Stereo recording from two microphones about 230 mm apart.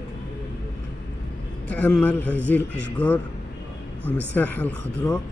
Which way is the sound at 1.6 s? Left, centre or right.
Centre.